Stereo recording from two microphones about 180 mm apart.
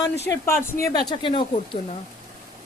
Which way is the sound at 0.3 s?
15° left (ahead or behind).